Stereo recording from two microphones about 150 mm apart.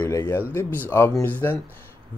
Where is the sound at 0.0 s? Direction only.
15° left (ahead or behind).